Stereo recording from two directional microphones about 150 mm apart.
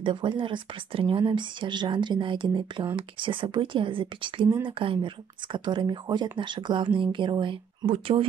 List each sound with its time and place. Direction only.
0.0 s speech: 35° right (ahead or behind)